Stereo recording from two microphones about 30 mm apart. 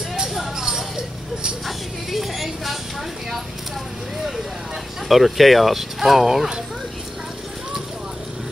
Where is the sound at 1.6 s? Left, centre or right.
Centre.